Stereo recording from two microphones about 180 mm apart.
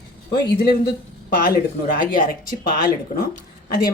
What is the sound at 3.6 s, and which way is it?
Speech, 55° left (ahead or behind).